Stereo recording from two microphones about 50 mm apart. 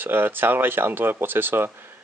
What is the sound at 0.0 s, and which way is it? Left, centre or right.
Speech, right.